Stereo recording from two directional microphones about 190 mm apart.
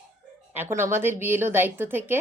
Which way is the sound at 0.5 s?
10° right (ahead or behind).